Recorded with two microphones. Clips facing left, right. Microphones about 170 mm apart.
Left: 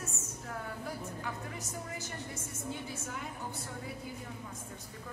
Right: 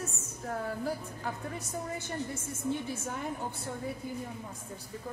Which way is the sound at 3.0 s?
30° right (ahead or behind).